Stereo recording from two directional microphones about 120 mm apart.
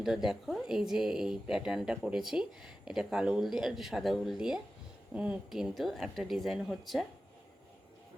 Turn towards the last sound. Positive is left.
turn(degrees=0)  # may be behind; listen again after turning